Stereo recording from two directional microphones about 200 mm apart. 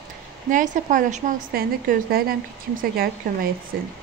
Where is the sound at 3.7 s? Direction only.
50° right (ahead or behind).